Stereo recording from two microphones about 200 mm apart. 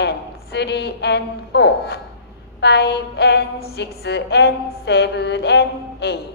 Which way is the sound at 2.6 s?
55° left (ahead or behind).